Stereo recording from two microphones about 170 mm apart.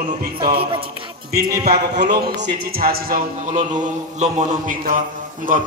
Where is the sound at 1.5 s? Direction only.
70° right (ahead or behind).